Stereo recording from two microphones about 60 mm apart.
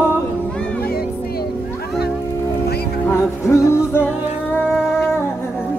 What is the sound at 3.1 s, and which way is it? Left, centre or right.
Music, left.